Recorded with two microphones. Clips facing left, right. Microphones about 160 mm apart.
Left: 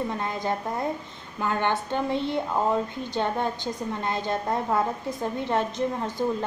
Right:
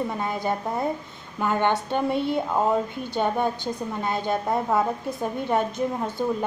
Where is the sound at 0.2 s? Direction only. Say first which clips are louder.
Right 2 dB; 10° right (ahead or behind).